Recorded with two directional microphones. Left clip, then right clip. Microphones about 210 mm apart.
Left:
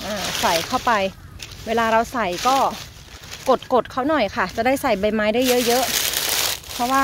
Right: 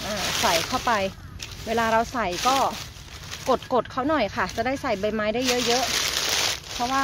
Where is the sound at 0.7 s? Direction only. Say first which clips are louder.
Left 4 dB; 45° left (ahead or behind).